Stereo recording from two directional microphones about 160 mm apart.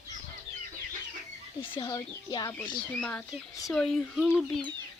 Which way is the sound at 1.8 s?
20° left (ahead or behind).